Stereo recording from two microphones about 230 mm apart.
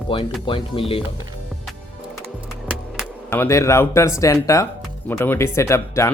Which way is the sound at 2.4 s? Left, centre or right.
Centre.